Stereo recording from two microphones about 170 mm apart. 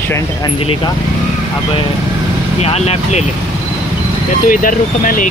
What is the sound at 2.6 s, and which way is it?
Speech, 40° left (ahead or behind).